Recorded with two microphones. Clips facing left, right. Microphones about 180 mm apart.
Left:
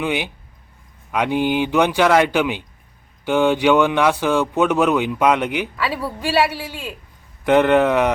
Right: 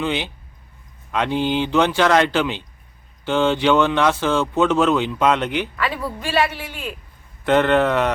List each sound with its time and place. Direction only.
0.0 s speech: 15° left (ahead or behind)
7.4 s speech: 15° left (ahead or behind)